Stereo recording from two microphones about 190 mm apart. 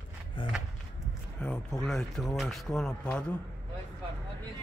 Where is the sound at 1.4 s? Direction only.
5° left (ahead or behind).